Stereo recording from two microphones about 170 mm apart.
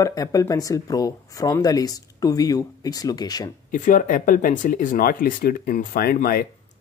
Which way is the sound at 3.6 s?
50° left (ahead or behind).